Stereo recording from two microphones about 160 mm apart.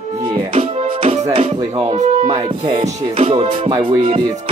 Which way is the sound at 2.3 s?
30° right (ahead or behind).